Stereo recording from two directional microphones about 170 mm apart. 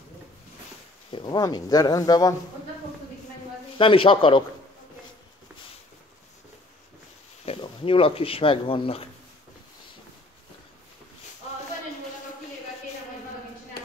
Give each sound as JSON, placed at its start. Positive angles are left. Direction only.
{"t": 1.1, "sound": "speech", "side_deg": 25}
{"t": 3.7, "sound": "a man's voice", "side_deg": 30}
{"t": 7.4, "sound": "speech", "side_deg": 35}